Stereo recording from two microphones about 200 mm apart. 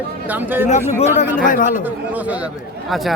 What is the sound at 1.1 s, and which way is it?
Speech, 40° left (ahead or behind).